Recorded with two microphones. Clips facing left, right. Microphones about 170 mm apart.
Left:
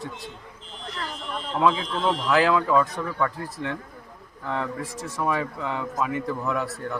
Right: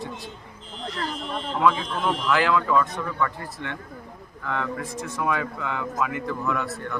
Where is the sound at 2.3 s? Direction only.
35° left (ahead or behind).